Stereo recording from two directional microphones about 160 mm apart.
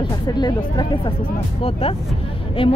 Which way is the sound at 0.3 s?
25° left (ahead or behind).